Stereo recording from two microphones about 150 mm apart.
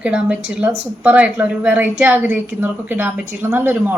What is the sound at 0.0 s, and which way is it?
A woman's voice, 10° right (ahead or behind).